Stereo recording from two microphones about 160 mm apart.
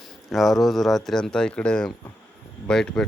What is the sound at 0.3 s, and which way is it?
Speech, centre (ahead or behind).